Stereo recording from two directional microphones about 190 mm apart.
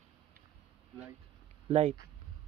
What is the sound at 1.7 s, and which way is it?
Speech, 30° right (ahead or behind).